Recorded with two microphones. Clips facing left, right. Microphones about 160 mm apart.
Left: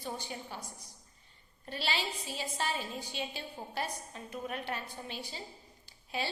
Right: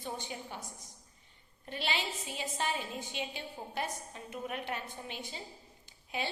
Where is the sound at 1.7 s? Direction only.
20° right (ahead or behind).